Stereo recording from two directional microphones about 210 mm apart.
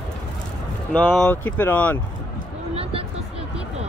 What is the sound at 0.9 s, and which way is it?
Speech, 5° left (ahead or behind).